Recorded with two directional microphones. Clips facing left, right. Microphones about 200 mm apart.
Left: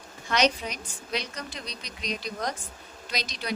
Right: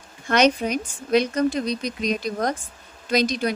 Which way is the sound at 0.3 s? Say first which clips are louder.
Right 7 dB; 55° right (ahead or behind).